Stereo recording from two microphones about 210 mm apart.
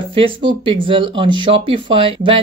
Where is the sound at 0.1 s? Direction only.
25° right (ahead or behind).